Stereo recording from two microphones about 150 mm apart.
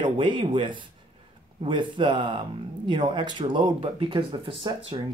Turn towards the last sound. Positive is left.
turn(degrees=-35)  # may be behind; listen again after turning